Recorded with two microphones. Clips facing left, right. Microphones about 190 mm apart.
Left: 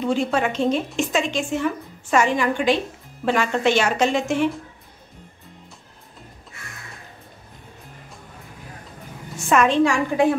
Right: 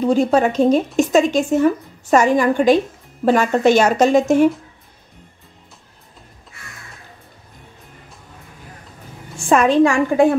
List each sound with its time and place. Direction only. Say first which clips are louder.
0.0 s a woman's voice: right 6 dB; 40° right (ahead or behind)
9.5 s a woman's voice: right 4 dB; 35° right (ahead or behind)
9.8 s a woman's voice: right 5 dB; 50° right (ahead or behind)